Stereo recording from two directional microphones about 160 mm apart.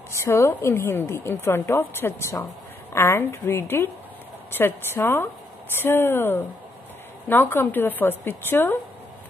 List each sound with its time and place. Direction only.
0.1 s a woman's voice: 15° left (ahead or behind)